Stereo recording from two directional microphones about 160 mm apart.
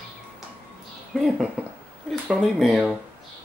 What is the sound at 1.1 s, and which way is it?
Speech, centre (ahead or behind).